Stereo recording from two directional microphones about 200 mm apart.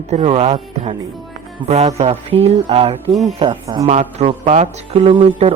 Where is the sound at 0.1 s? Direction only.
35° right (ahead or behind).